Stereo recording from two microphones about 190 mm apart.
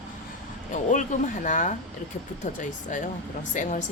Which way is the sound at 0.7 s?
40° left (ahead or behind).